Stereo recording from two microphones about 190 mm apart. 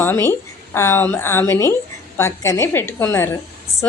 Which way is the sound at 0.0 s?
10° left (ahead or behind).